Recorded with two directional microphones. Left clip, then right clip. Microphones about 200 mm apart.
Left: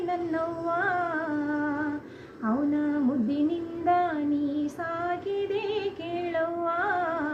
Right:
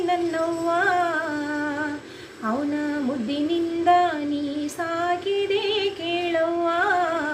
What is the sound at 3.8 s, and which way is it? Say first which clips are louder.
Child singing: right 6 dB; 40° right (ahead or behind).